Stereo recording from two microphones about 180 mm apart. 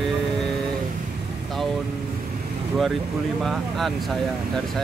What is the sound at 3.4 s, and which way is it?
Speech, centre (ahead or behind).